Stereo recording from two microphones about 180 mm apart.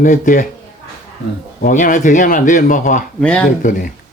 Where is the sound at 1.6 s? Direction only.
50° left (ahead or behind).